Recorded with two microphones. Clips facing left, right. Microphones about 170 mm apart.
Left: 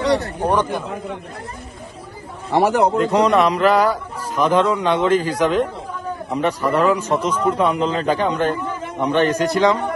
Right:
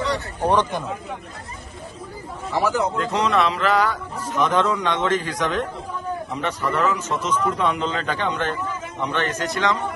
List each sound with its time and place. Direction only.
0.4 s speech: 10° left (ahead or behind)
2.5 s speech: 65° left (ahead or behind)
3.0 s a man's voice: 35° left (ahead or behind)
6.7 s a man's voice: 35° left (ahead or behind)
7.2 s speech: 10° left (ahead or behind)
7.4 s a man's voice: 30° left (ahead or behind)